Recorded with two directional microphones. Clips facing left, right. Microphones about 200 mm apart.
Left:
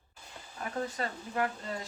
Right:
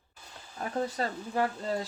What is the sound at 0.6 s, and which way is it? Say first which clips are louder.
Speech: right 4 dB; 35° right (ahead or behind).